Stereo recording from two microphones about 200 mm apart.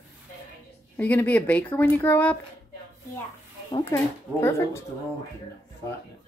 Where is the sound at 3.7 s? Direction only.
20° left (ahead or behind).